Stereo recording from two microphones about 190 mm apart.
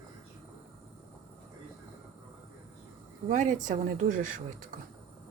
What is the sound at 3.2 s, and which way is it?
Speech, 40° right (ahead or behind).